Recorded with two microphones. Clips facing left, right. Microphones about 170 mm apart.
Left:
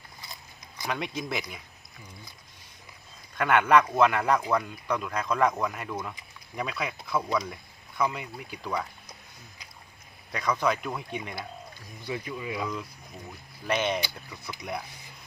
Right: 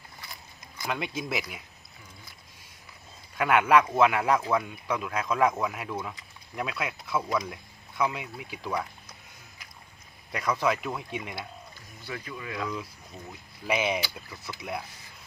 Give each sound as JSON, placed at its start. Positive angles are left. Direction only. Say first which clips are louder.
{"t": 0.9, "sound": "speech", "louder": "even", "side_deg": 0}
{"t": 3.3, "sound": "speech", "louder": "even", "side_deg": -5}
{"t": 10.3, "sound": "speech", "louder": "even", "side_deg": -5}
{"t": 12.0, "sound": "speech", "louder": "left 4 dB", "side_deg": 15}
{"t": 12.6, "sound": "speech", "louder": "even", "side_deg": -5}